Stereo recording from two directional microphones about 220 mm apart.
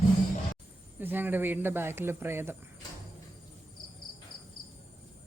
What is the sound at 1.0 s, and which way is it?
Speech, 10° right (ahead or behind).